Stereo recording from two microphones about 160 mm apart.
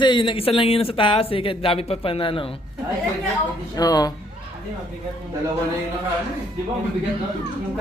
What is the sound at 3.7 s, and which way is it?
Speech, 25° left (ahead or behind).